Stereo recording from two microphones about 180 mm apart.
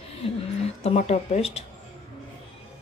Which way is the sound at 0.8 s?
35° left (ahead or behind).